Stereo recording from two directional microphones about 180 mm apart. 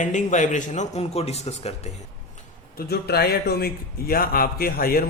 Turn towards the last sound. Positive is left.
turn(degrees=55)  # may be behind; listen again after turning